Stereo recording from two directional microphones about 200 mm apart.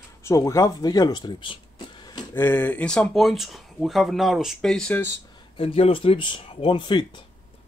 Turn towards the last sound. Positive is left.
turn(degrees=25)  # may be behind; listen again after turning